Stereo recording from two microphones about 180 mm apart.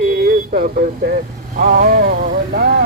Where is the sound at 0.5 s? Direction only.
45° right (ahead or behind).